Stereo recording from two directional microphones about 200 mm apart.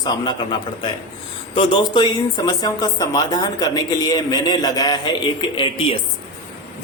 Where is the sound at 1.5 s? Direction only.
25° left (ahead or behind).